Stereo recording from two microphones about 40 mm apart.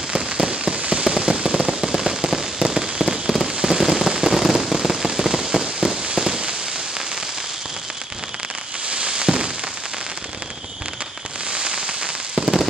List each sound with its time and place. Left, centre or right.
0.1 s fireworks: right
1.0 s firecracker: centre
6.1 s fireworks: centre
8.9 s fireworks: right
11.5 s fireworks: right
12.4 s firecracker: right